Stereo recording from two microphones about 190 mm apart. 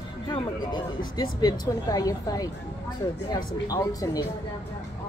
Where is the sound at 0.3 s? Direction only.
25° left (ahead or behind).